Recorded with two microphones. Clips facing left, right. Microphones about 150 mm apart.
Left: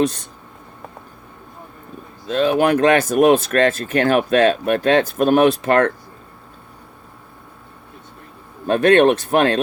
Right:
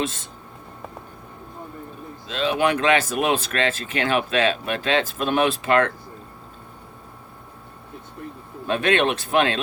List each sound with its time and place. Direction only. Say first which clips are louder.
0.0 s speech: left 8 dB; 40° left (ahead or behind)
2.2 s speech: left 5 dB; 50° left (ahead or behind)
8.6 s speech: left 8 dB; 40° left (ahead or behind)